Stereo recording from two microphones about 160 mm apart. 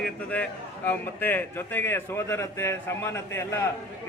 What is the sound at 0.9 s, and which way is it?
A man's voice, 10° left (ahead or behind).